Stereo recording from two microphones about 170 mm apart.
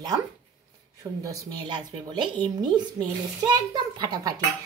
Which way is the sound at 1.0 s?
20° right (ahead or behind).